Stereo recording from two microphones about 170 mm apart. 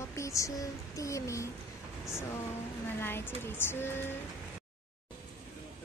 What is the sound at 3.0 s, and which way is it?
A woman's voice, 15° left (ahead or behind).